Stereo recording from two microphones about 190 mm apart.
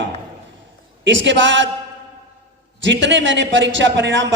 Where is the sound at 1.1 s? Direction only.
75° right (ahead or behind).